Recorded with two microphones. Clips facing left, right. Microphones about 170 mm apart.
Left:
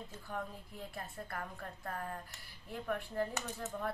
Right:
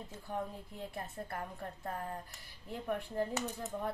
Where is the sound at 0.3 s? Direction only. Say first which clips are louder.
Right 3 dB; 20° right (ahead or behind).